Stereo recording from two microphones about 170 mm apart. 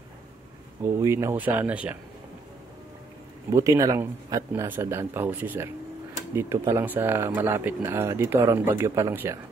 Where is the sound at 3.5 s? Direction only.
20° right (ahead or behind).